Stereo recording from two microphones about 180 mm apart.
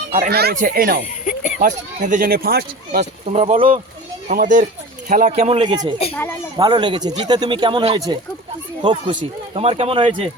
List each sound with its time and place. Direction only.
0.1 s speech: 55° right (ahead or behind)
1.2 s a sound: 45° left (ahead or behind)
1.6 s speech: 45° right (ahead or behind)
3.0 s speech: 35° right (ahead or behind)
5.3 s speech: 35° right (ahead or behind)
6.1 s speech: 15° left (ahead or behind)
6.6 s speech: 25° right (ahead or behind)